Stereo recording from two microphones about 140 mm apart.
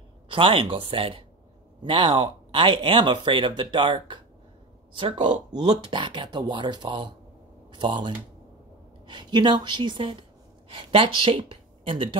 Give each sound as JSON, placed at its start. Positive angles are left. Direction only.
{"t": 0.3, "sound": "speech", "side_deg": -40}